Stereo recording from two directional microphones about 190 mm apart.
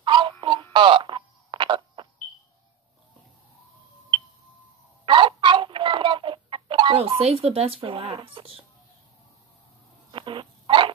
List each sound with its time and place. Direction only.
0.0 s a sound: 25° right (ahead or behind)
0.7 s radio: 25° right (ahead or behind)
5.0 s chicken: 25° right (ahead or behind)
10.1 s dog: 25° right (ahead or behind)